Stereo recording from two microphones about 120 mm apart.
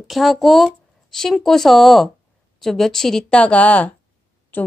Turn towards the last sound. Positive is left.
turn(degrees=15)  # may be behind; listen again after turning